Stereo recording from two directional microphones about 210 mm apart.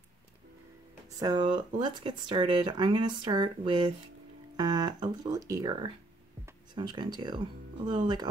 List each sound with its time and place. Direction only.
1.2 s speech: 20° right (ahead or behind)